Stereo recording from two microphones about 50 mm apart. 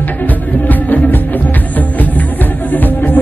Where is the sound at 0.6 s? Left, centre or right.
Left.